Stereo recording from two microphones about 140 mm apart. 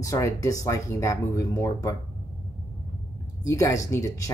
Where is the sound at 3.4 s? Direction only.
25° left (ahead or behind).